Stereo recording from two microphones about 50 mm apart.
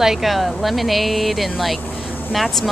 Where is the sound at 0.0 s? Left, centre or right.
Centre.